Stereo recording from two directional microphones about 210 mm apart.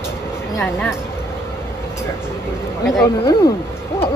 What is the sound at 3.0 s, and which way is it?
Speech, 15° left (ahead or behind).